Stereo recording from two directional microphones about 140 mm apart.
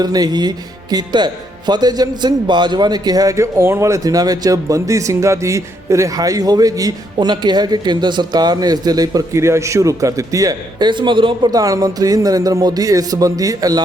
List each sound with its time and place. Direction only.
0.0 s speech: 30° right (ahead or behind)